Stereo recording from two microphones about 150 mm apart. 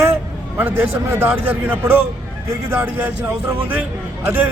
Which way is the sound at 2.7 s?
15° right (ahead or behind).